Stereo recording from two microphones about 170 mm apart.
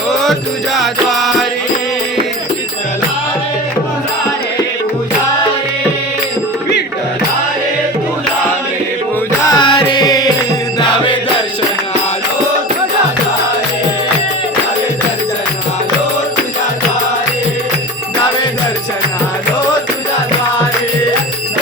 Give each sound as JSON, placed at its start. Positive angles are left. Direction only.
{"t": 0.8, "sound": "music", "side_deg": 0}
{"t": 9.6, "sound": "music", "side_deg": 25}